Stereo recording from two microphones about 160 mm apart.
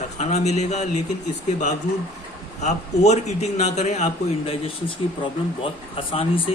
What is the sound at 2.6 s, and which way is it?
A man's voice, 45° left (ahead or behind).